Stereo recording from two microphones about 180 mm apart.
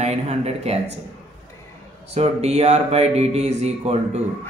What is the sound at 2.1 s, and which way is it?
Speech, 35° right (ahead or behind).